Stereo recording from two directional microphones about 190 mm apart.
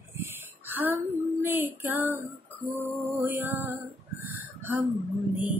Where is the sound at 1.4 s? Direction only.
10° right (ahead or behind).